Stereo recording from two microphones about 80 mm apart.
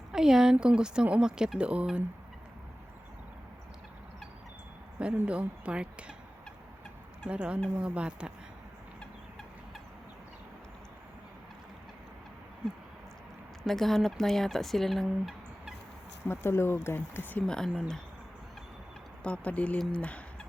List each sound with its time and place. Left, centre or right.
0.1 s speech: centre
5.2 s speech: centre
7.3 s speech: centre
9.0 s fowl: centre
13.7 s speech: centre
16.3 s speech: left
17.4 s speech: centre
19.2 s speech: centre